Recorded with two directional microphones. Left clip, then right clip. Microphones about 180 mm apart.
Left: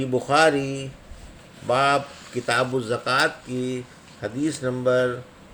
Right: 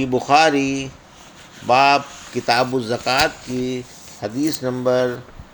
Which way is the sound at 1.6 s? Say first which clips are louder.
Right 6 dB; 15° right (ahead or behind).